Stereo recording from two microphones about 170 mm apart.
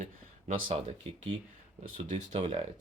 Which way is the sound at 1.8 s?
45° right (ahead or behind).